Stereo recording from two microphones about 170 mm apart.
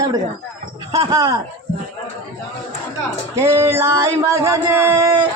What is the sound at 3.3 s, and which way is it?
Speech, 15° right (ahead or behind).